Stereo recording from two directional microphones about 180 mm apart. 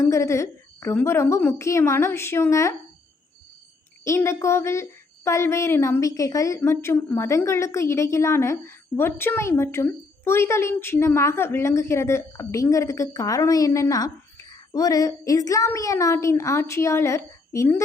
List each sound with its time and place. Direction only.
0.0 s speech: 15° left (ahead or behind)
4.0 s speech: 15° left (ahead or behind)